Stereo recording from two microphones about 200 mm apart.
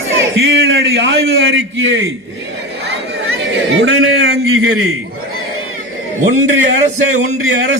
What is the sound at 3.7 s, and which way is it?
Speech, 60° right (ahead or behind).